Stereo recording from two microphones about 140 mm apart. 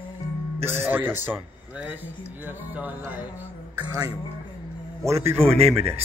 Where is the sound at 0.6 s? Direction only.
15° right (ahead or behind).